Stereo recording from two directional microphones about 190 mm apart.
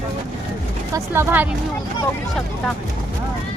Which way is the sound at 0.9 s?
15° right (ahead or behind).